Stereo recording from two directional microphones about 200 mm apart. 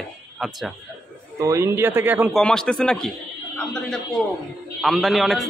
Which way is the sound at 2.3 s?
5° left (ahead or behind).